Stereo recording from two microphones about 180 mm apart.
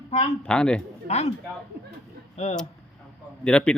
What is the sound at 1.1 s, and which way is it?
Speech, 35° left (ahead or behind).